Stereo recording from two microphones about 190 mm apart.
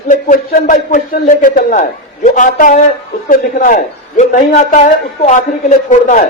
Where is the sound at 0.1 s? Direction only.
40° left (ahead or behind).